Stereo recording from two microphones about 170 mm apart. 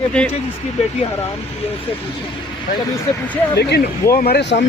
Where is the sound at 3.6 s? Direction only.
70° left (ahead or behind).